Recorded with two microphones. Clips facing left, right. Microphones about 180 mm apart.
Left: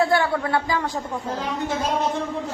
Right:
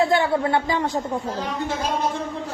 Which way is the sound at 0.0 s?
20° right (ahead or behind).